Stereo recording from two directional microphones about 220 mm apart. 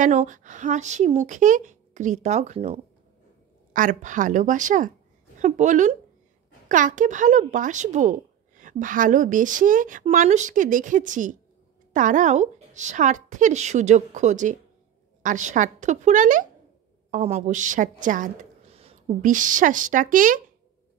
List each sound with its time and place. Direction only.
0.0 s a woman's voice: 35° right (ahead or behind)